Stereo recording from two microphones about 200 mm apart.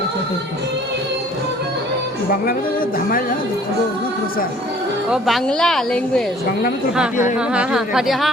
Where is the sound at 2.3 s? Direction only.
45° left (ahead or behind).